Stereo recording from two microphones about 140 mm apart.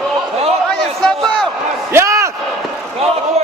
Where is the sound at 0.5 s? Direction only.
5° left (ahead or behind).